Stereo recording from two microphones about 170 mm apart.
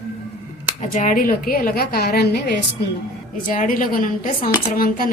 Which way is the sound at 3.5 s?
50° left (ahead or behind).